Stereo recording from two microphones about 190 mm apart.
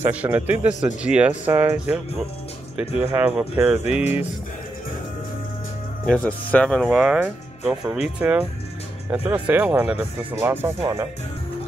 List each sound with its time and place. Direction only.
0.0 s speech: 10° right (ahead or behind)
3.0 s speech: 10° right (ahead or behind)
6.0 s speech: 5° left (ahead or behind); by 10.7 s 10° right (ahead or behind)
10.8 s speech: 20° right (ahead or behind)